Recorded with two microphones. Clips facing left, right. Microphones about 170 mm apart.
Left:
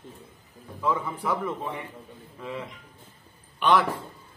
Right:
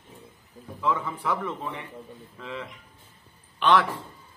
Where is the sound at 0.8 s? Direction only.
10° left (ahead or behind).